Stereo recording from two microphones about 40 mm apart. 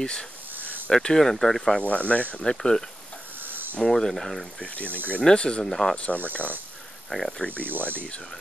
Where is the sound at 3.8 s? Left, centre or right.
Centre.